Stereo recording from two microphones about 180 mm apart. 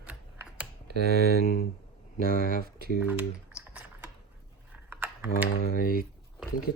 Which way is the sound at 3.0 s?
5° right (ahead or behind).